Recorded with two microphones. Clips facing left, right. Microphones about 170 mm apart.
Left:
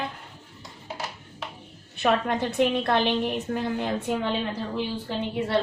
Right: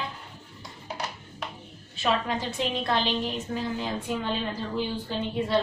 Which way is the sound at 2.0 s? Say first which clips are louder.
Left 4 dB; 55° left (ahead or behind).